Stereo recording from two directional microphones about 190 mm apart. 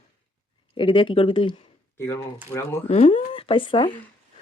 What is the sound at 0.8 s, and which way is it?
Speech, 25° left (ahead or behind).